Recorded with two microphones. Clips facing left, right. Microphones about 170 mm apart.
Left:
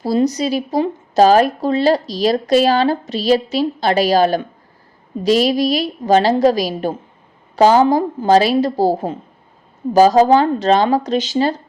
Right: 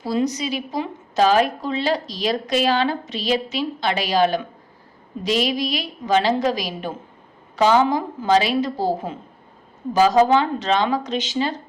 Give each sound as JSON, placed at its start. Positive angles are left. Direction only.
{"t": 0.0, "sound": "speech", "side_deg": 35}